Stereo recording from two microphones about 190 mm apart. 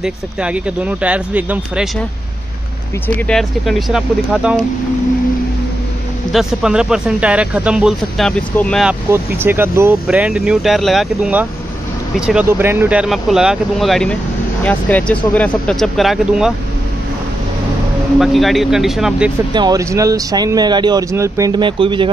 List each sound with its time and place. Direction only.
0.0 s speech: 5° right (ahead or behind)
3.2 s speech: 5° left (ahead or behind)
6.3 s speech: 5° right (ahead or behind)
9.4 s speech: 10° right (ahead or behind)
18.2 s speech: centre (ahead or behind)
19.5 s speech: 20° right (ahead or behind)